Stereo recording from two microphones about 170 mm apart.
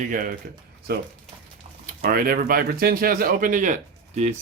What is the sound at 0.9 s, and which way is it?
Speech, 65° right (ahead or behind).